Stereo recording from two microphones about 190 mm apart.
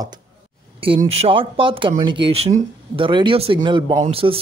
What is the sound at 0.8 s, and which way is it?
Speech, 30° right (ahead or behind).